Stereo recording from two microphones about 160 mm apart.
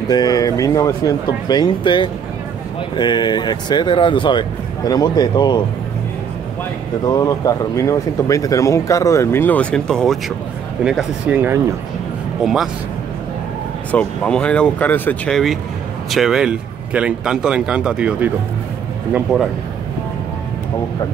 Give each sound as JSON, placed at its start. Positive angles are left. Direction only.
{"t": 0.1, "sound": "speech", "side_deg": 25}
{"t": 7.1, "sound": "speech", "side_deg": 20}
{"t": 13.9, "sound": "speech", "side_deg": 5}